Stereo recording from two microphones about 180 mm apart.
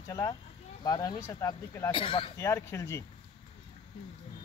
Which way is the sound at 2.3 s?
15° left (ahead or behind).